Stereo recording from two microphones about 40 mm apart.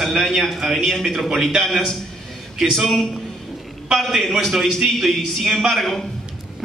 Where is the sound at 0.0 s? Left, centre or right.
Centre.